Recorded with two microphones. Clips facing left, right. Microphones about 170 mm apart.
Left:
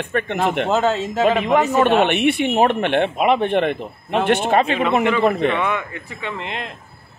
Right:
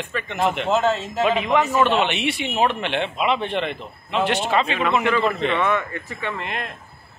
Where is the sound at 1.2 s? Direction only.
45° left (ahead or behind).